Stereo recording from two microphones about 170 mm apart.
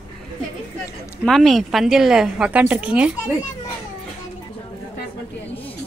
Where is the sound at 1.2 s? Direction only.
Centre (ahead or behind).